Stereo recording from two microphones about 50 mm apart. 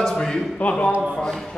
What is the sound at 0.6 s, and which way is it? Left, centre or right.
Speech, left.